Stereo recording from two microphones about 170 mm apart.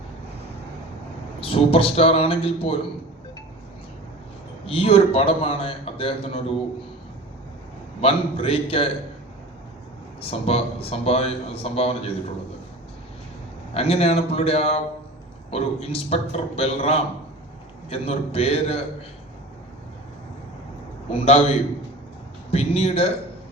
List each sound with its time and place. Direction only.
1.4 s speech: 35° left (ahead or behind)
4.6 s speech: 35° left (ahead or behind)
8.0 s speech: 35° left (ahead or behind)
10.2 s speech: 35° left (ahead or behind)
13.7 s speech: 35° left (ahead or behind)
21.1 s speech: 35° left (ahead or behind)
22.5 s speech: 35° left (ahead or behind)